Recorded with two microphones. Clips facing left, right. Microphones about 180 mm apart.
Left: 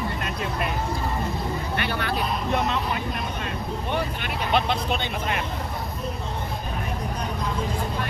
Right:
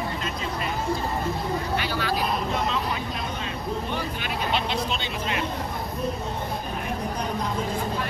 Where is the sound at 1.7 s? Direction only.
60° left (ahead or behind).